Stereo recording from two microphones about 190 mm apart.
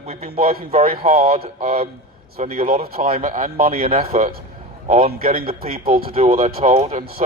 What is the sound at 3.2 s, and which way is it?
A man's voice, 40° right (ahead or behind).